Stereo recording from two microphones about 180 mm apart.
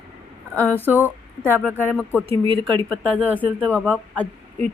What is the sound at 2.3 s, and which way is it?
Speech, 30° right (ahead or behind).